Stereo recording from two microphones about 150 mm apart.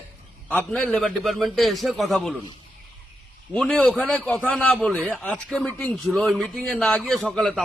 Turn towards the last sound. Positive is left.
turn(degrees=0)  # may be behind; listen again after turning